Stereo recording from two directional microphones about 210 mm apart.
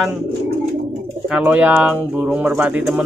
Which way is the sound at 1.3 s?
5° right (ahead or behind).